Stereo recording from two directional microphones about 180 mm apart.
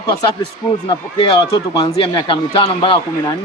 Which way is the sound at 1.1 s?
30° left (ahead or behind).